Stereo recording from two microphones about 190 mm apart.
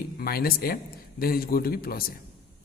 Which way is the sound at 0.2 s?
50° left (ahead or behind).